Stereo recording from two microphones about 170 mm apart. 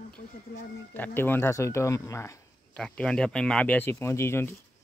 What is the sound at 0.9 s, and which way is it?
Speech, 10° left (ahead or behind).